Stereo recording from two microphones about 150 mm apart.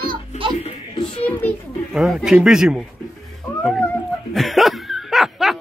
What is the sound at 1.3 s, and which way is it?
Speech, 10° left (ahead or behind).